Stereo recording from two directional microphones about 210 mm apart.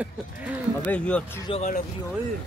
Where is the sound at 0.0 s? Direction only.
5° right (ahead or behind).